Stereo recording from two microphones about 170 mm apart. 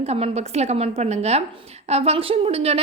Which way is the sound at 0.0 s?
40° right (ahead or behind).